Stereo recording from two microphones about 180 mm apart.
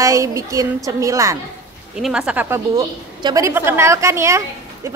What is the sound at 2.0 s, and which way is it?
A woman's voice, 5° right (ahead or behind).